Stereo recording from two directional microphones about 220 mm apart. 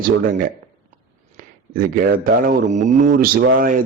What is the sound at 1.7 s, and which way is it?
Speech, 40° right (ahead or behind).